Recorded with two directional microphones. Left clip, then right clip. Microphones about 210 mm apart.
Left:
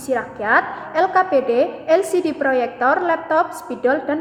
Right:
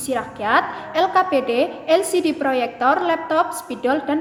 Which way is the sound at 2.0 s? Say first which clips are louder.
Even; 35° left (ahead or behind).